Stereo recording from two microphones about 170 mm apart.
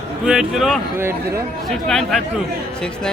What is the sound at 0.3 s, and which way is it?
Speech, centre (ahead or behind).